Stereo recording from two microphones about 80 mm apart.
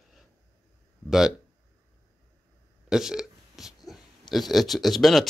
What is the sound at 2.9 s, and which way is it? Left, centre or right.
Speech, centre.